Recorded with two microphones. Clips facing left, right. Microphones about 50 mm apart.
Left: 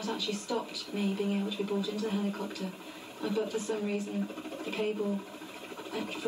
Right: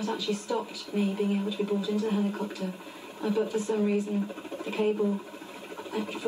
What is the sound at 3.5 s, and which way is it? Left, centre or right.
Speech, right.